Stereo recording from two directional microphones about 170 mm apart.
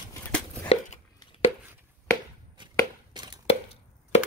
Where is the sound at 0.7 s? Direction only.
40° left (ahead or behind).